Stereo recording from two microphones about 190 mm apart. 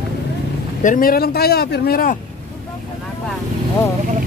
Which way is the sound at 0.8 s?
45° left (ahead or behind).